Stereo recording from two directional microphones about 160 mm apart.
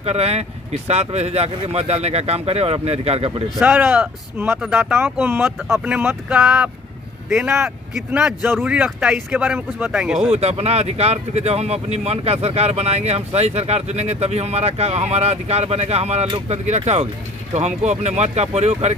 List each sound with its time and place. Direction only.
0.0 s speech: 40° right (ahead or behind)
3.5 s speech: 10° right (ahead or behind)
10.3 s speech: 40° right (ahead or behind)